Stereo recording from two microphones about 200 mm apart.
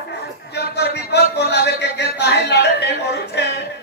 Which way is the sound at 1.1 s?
55° left (ahead or behind).